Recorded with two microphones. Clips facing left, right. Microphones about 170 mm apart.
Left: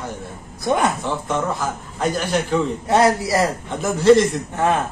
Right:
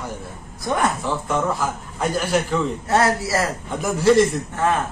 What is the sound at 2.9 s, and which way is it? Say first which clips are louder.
Speech: left 3 dB; 15° left (ahead or behind).